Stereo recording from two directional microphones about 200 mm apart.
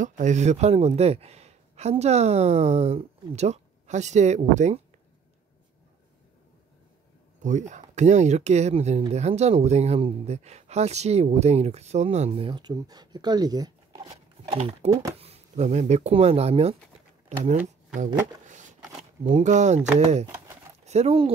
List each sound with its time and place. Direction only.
0.0 s speech: 35° right (ahead or behind)
7.4 s speech: 35° right (ahead or behind); by 14.6 s 20° right (ahead or behind)
14.6 s speech: 30° right (ahead or behind)
14.9 s speech: 15° right (ahead or behind)
15.1 s speech: 30° right (ahead or behind)
19.2 s speech: 35° right (ahead or behind)
20.2 s a sound: 15° right (ahead or behind)
20.8 s speech: 35° right (ahead or behind)